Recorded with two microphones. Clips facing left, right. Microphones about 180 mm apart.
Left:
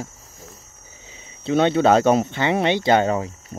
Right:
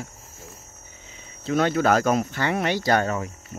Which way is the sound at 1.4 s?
25° left (ahead or behind).